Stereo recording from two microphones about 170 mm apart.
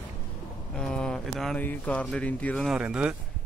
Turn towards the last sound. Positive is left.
turn(degrees=-5)  # may be behind; listen again after turning